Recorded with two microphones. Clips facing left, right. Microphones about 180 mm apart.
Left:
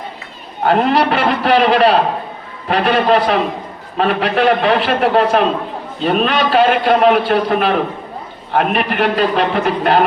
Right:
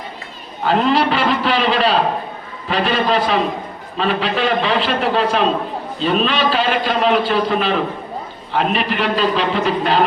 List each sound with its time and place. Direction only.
0.6 s a man's voice: 60° left (ahead or behind)